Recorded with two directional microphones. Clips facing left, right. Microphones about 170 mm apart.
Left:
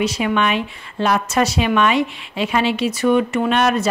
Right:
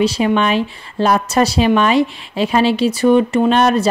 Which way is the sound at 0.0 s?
30° right (ahead or behind).